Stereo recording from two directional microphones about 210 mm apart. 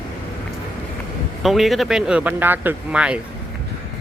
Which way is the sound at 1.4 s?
Centre (ahead or behind).